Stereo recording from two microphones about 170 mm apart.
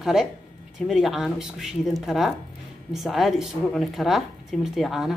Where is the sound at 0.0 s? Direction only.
5° right (ahead or behind).